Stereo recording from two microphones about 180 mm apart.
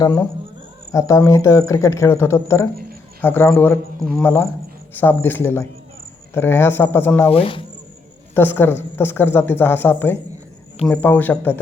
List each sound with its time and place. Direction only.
0.0 s speech: 15° left (ahead or behind)
7.3 s speech: 30° left (ahead or behind)
8.4 s speech: 10° left (ahead or behind)